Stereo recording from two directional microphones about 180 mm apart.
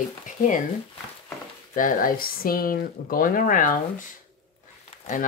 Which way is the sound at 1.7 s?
50° left (ahead or behind).